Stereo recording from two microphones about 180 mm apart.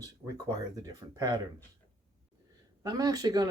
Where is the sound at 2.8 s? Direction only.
20° right (ahead or behind).